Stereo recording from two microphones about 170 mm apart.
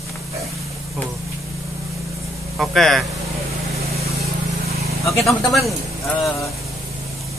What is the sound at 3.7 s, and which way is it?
Vehicle, 35° right (ahead or behind).